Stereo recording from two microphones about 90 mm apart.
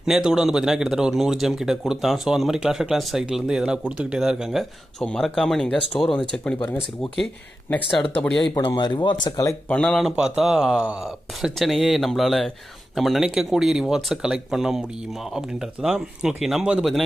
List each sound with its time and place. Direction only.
0.0 s a man's voice: 5° right (ahead or behind)
5.0 s speech: 10° left (ahead or behind)
8.1 s speech: 10° left (ahead or behind)
8.7 s speech: 55° left (ahead or behind)
9.7 s speech: 10° left (ahead or behind)
10.0 s speech: 5° right (ahead or behind)
11.4 s a man's voice: centre (ahead or behind)